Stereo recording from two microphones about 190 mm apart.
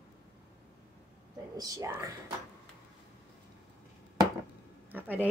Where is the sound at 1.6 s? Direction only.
15° right (ahead or behind).